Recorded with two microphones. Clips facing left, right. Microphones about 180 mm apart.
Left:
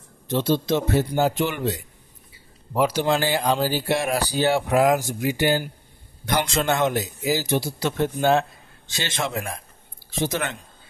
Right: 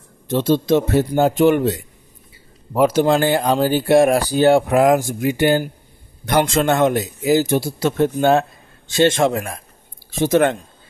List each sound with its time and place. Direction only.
0.4 s speech: 50° right (ahead or behind)